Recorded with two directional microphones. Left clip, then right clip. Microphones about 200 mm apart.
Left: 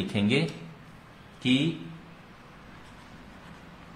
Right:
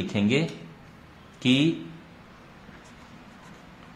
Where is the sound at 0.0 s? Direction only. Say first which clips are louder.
Right 2 dB; 15° right (ahead or behind).